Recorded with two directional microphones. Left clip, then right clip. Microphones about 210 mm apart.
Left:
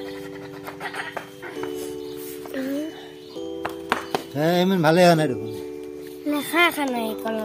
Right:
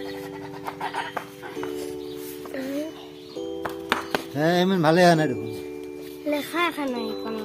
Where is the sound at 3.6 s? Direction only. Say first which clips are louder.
Left 1 dB; 20° left (ahead or behind).